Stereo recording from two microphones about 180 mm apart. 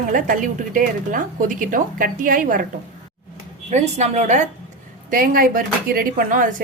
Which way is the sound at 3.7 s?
40° right (ahead or behind).